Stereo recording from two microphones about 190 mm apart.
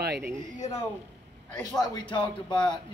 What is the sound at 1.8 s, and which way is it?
Speech, 25° left (ahead or behind).